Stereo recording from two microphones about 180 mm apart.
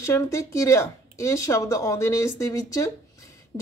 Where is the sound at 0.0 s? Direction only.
15° left (ahead or behind).